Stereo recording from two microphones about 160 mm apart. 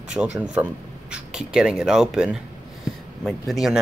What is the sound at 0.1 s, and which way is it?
A man's voice, 5° right (ahead or behind).